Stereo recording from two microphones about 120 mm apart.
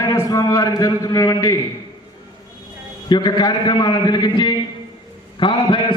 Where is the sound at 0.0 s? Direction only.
25° left (ahead or behind).